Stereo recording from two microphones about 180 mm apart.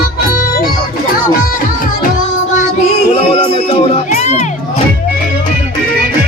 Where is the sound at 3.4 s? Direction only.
35° left (ahead or behind).